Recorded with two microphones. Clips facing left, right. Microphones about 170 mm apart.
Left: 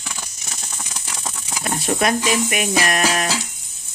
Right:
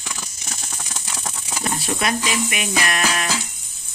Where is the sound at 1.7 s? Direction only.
45° left (ahead or behind).